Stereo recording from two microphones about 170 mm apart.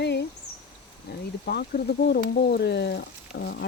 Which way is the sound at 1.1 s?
65° left (ahead or behind).